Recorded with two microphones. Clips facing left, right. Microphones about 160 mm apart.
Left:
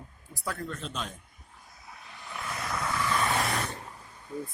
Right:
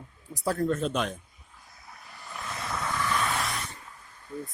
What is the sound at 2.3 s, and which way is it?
Vehicle, 5° left (ahead or behind).